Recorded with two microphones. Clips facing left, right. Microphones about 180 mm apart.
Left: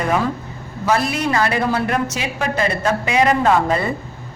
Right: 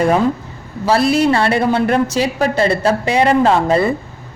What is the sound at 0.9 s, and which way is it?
A woman's voice, 30° right (ahead or behind).